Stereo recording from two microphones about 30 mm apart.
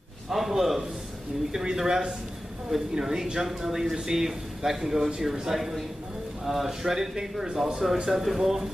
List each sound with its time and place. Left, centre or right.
0.3 s a man's voice: centre
7.5 s speech: right
8.1 s a man's voice: centre